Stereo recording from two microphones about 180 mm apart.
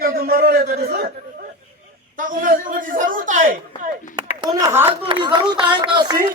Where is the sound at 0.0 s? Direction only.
55° right (ahead or behind).